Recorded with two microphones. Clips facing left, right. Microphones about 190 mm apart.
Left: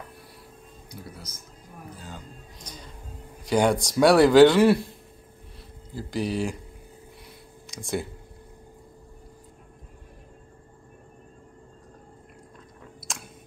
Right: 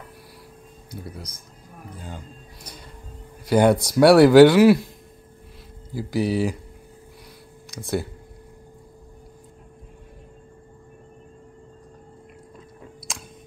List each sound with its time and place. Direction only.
3.4 s a man's voice: 5° right (ahead or behind)
5.9 s a man's voice: 10° right (ahead or behind)
7.7 s speech: 5° right (ahead or behind)
13.1 s chewing: centre (ahead or behind)